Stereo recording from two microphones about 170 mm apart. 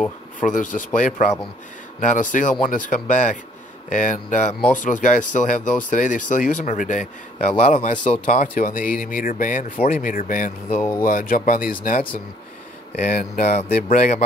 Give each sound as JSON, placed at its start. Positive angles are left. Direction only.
{"t": 0.4, "sound": "speech", "side_deg": 50}
{"t": 10.8, "sound": "speech", "side_deg": 15}
{"t": 11.1, "sound": "speech", "side_deg": 55}